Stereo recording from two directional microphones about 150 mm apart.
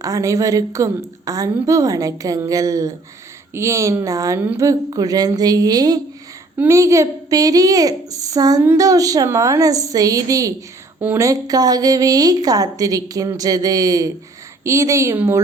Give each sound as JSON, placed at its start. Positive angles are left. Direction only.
{"t": 0.0, "sound": "a woman's voice", "side_deg": -20}